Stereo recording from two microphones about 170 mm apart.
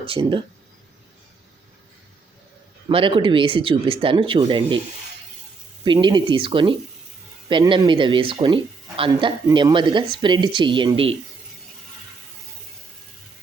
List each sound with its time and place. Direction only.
0.0 s speech: 35° right (ahead or behind)
2.9 s speech: 30° right (ahead or behind)
5.8 s speech: 30° right (ahead or behind)